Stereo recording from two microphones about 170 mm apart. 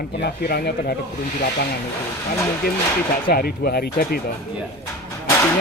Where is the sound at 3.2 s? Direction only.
65° left (ahead or behind).